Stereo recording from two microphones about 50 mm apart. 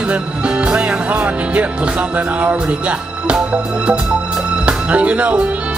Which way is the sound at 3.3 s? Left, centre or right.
Centre.